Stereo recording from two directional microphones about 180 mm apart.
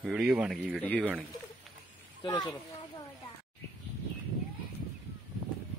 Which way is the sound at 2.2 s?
25° left (ahead or behind).